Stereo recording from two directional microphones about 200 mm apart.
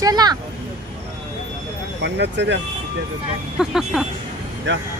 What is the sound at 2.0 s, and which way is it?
Speech, 60° right (ahead or behind).